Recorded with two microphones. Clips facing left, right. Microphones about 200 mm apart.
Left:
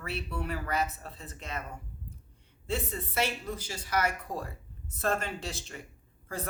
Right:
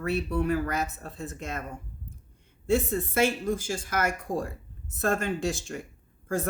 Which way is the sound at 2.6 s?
45° right (ahead or behind).